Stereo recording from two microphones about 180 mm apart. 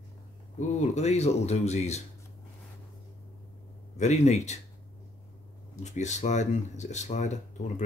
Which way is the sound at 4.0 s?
40° left (ahead or behind).